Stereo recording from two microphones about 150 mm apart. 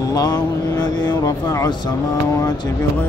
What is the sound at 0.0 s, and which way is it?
Speech, 25° left (ahead or behind).